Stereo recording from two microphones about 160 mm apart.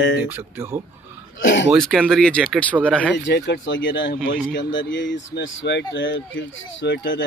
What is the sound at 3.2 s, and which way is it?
Speech, 90° left.